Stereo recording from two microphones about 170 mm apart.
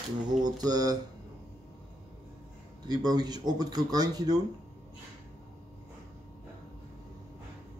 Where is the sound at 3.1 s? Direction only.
25° right (ahead or behind).